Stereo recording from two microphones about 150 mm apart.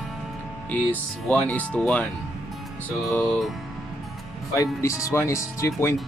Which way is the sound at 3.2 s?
5° left (ahead or behind).